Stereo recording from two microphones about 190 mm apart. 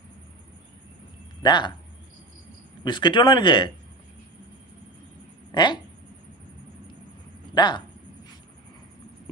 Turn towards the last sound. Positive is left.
turn(degrees=20)  # may be behind; listen again after turning